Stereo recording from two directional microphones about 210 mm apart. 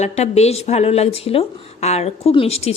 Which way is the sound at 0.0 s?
30° left (ahead or behind).